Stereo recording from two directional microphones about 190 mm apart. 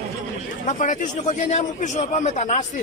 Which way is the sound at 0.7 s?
40° left (ahead or behind).